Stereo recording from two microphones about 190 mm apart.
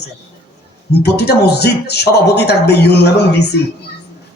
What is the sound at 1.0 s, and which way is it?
A man's voice, 60° left (ahead or behind).